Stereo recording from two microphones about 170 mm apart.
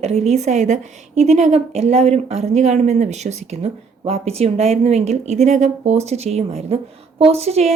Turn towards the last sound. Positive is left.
turn(degrees=-40)  # may be behind; listen again after turning